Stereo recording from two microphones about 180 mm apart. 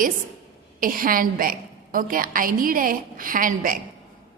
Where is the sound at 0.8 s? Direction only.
50° right (ahead or behind).